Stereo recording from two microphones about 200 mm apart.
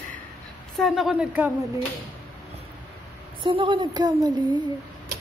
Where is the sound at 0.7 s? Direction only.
Centre (ahead or behind).